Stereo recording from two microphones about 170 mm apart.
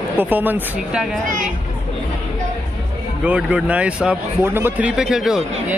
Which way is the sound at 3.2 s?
10° right (ahead or behind).